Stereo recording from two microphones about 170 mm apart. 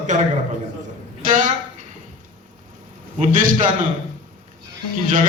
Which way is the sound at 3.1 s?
50° right (ahead or behind).